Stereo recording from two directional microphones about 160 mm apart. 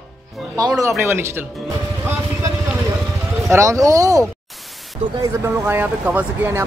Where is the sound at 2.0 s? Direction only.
15° right (ahead or behind).